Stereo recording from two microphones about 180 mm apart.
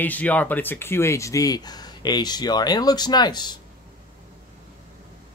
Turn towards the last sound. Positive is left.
turn(degrees=25)  # may be behind; listen again after turning